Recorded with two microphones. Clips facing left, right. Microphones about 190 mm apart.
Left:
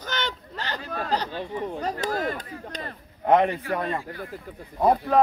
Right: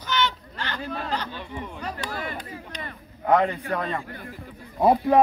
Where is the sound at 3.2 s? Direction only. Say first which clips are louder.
Left 1 dB; 20° left (ahead or behind).